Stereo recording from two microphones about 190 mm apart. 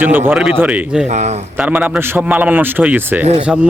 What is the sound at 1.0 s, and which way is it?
Speech, 35° right (ahead or behind).